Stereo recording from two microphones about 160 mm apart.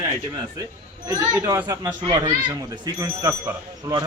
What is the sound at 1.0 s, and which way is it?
A man's voice, 25° right (ahead or behind).